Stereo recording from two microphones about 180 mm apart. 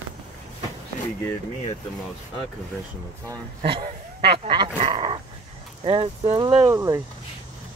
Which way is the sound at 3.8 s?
65° right (ahead or behind).